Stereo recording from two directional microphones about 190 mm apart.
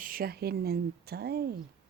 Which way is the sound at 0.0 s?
50° right (ahead or behind).